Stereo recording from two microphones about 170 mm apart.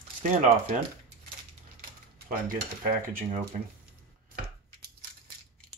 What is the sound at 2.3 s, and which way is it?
Speech, 55° right (ahead or behind).